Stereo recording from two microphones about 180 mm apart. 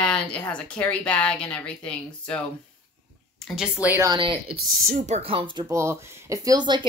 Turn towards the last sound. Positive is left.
turn(degrees=-25)  # may be behind; listen again after turning